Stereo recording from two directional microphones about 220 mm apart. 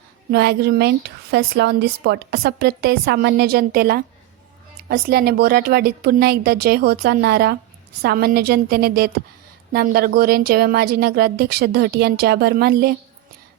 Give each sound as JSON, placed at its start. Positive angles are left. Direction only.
{"t": 0.3, "sound": "speech", "side_deg": -45}